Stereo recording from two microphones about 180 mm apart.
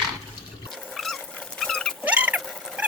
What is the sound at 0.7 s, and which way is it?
Rodents, centre (ahead or behind).